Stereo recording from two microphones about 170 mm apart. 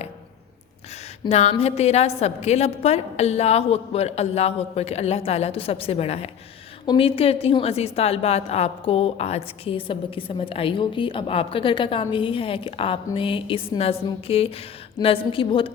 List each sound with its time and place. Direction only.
1.3 s a woman's voice: 40° left (ahead or behind)